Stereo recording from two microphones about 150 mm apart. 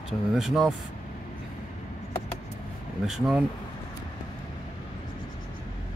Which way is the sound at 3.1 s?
Centre (ahead or behind).